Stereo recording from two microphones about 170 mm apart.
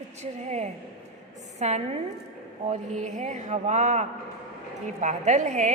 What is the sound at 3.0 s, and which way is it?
Speech, 45° right (ahead or behind).